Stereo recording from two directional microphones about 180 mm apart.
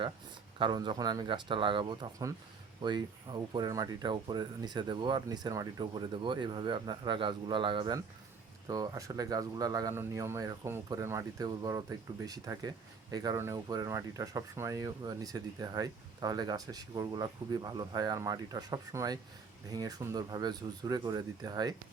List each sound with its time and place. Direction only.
0.6 s speech: 25° right (ahead or behind)